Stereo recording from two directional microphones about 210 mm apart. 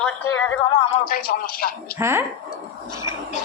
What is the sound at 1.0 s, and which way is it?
Speech, 45° left (ahead or behind).